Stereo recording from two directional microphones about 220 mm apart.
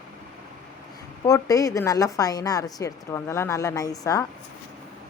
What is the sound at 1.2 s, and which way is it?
A woman's voice, 15° left (ahead or behind).